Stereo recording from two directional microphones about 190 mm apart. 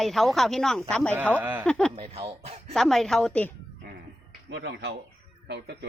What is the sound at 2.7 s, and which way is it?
Speech, centre (ahead or behind).